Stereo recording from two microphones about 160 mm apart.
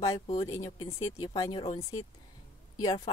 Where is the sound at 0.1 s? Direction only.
40° left (ahead or behind).